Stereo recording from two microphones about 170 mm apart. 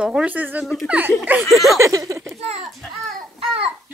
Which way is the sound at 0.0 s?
5° right (ahead or behind).